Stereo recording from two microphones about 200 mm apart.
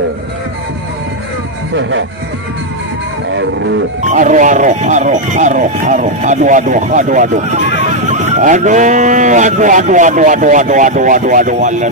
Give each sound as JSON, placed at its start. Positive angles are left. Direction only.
{"t": 1.8, "sound": "speech", "side_deg": -70}
{"t": 3.3, "sound": "music", "side_deg": -65}
{"t": 4.0, "sound": "speech", "side_deg": -40}